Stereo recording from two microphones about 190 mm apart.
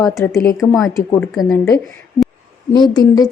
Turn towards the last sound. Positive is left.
turn(degrees=20)  # may be behind; listen again after turning